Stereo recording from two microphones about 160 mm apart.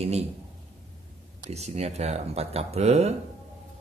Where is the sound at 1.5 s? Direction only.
40° right (ahead or behind).